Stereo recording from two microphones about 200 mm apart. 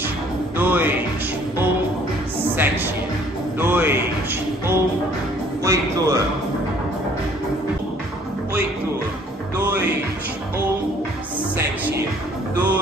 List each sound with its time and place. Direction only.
0.6 s music: 10° right (ahead or behind)
2.5 s music: 10° right (ahead or behind)
3.5 s a sound: 10° right (ahead or behind)
5.6 s music: 15° right (ahead or behind)
9.6 s music: 10° right (ahead or behind)
11.5 s music: 10° right (ahead or behind)